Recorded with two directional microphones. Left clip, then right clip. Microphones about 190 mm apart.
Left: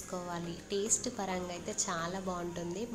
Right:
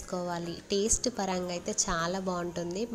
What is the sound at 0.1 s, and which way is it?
A woman's voice, 30° right (ahead or behind).